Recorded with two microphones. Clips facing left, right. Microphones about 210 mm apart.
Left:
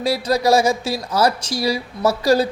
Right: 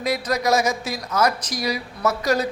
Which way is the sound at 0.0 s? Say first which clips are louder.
Left 4 dB; 30° left (ahead or behind).